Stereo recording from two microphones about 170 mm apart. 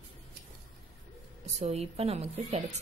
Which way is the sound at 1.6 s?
40° right (ahead or behind).